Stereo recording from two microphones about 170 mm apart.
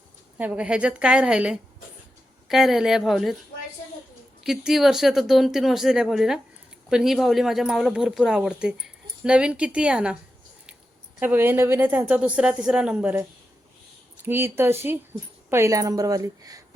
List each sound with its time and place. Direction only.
0.3 s a woman's voice: 5° right (ahead or behind)
4.4 s speech: centre (ahead or behind)
11.2 s a woman's voice: 10° right (ahead or behind)